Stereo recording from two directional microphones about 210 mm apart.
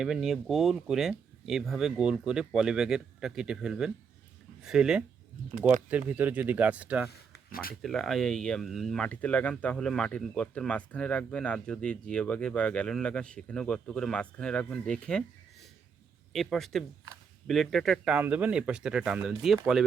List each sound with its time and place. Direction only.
0.0 s speech: centre (ahead or behind)
7.3 s a sound: 45° left (ahead or behind)
7.8 s speech: centre (ahead or behind)
16.3 s speech: centre (ahead or behind)